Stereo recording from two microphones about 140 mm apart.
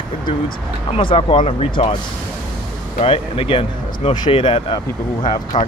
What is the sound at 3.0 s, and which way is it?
Speech, 40° left (ahead or behind).